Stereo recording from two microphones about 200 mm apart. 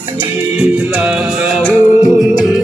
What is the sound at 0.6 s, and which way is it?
Music, 5° right (ahead or behind).